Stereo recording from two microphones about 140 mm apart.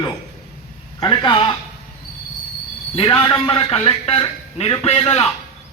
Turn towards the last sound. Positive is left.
turn(degrees=45)  # may be behind; listen again after turning